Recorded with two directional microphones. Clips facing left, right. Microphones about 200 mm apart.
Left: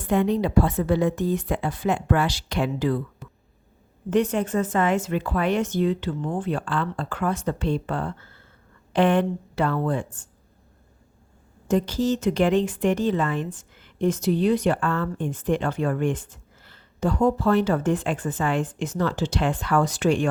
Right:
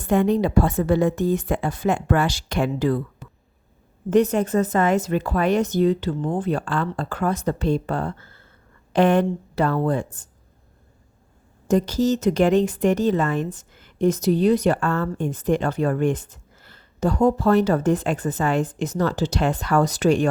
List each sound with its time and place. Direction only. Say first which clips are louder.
0.0 s a woman's voice: right 3 dB; 45° right (ahead or behind)
3.2 s a sound: even; centre (ahead or behind)
4.1 s speech: right 4 dB; 40° right (ahead or behind)
11.7 s speech: right 3 dB; 40° right (ahead or behind)